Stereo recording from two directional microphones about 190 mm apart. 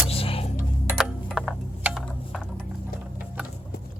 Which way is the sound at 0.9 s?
Centre (ahead or behind).